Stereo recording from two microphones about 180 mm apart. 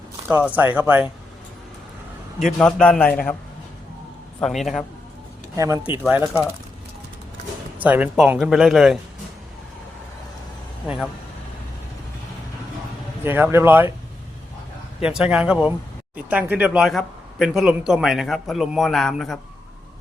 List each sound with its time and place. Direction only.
0.3 s speech: 10° right (ahead or behind)
2.6 s speech: 5° left (ahead or behind)
4.4 s speech: centre (ahead or behind)
5.5 s speech: 20° right (ahead or behind)
7.8 s speech: 10° right (ahead or behind)
10.8 s speech: 5° right (ahead or behind)
13.2 s speech: 10° right (ahead or behind)
15.0 s speech: 5° right (ahead or behind)